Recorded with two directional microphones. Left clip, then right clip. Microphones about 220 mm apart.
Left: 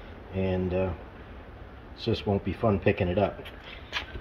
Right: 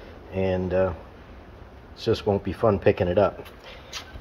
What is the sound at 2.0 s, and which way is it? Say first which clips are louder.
Speech: right 5 dB; 15° right (ahead or behind).